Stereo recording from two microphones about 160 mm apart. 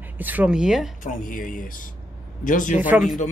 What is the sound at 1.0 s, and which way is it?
A man's voice, 55° left (ahead or behind).